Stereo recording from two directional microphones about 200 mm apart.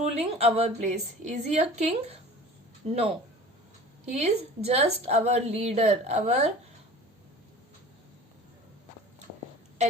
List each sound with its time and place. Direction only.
0.0 s a woman's voice: 30° right (ahead or behind)